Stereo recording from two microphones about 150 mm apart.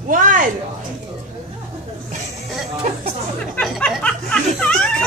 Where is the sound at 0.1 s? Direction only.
60° right (ahead or behind).